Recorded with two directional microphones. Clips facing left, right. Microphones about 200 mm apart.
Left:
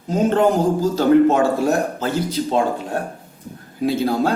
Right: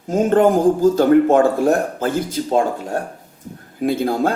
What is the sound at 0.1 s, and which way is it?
Speech, 50° right (ahead or behind).